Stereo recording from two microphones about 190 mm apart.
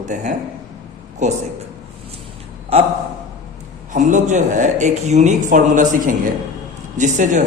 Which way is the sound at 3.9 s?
40° right (ahead or behind).